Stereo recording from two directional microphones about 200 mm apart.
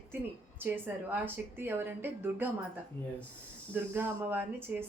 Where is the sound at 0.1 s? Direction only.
10° right (ahead or behind).